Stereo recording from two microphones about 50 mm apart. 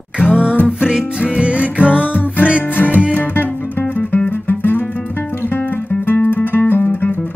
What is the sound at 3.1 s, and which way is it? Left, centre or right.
Music, left.